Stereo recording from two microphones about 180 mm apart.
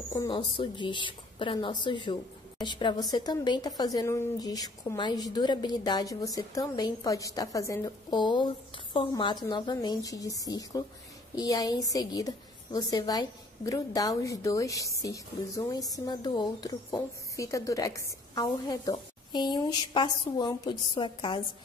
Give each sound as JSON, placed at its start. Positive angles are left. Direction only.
{"t": 0.1, "sound": "a woman's voice", "side_deg": 20}